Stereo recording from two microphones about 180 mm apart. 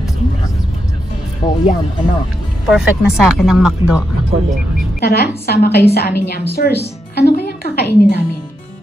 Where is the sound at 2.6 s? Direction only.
5° right (ahead or behind).